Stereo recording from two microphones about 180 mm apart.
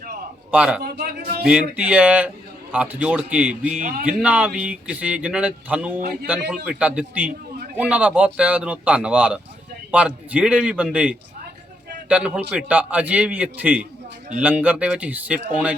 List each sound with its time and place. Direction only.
0.5 s speech: 5° right (ahead or behind)
0.8 s speech: 60° right (ahead or behind)
1.7 s speech: 5° right (ahead or behind)
3.8 s a man's voice: 45° right (ahead or behind)
4.0 s speech: 5° right (ahead or behind)